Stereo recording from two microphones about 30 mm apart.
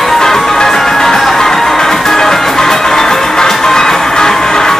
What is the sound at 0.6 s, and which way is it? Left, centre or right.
Music, centre.